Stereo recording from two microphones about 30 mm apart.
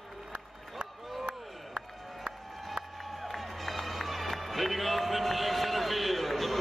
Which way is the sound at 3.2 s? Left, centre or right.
Centre.